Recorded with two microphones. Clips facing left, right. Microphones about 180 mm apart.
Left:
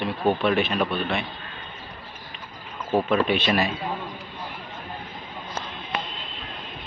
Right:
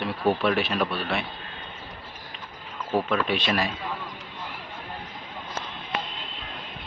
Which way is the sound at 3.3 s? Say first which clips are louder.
Left 3 dB; centre (ahead or behind).